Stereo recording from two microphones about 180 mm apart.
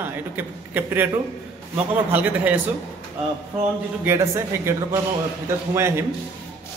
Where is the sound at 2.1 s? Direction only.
10° right (ahead or behind).